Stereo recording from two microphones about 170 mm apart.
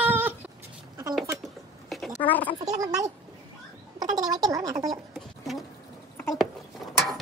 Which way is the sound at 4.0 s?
20° right (ahead or behind).